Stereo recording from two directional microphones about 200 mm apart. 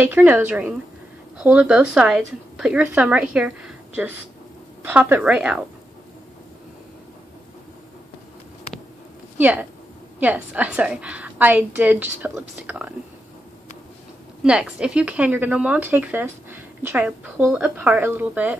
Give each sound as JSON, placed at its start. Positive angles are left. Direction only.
{"t": 0.0, "sound": "speech", "side_deg": -10}
{"t": 9.4, "sound": "speech", "side_deg": -10}
{"t": 14.4, "sound": "speech", "side_deg": -5}